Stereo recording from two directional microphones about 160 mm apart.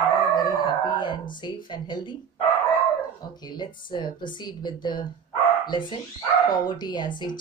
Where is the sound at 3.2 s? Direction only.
25° left (ahead or behind).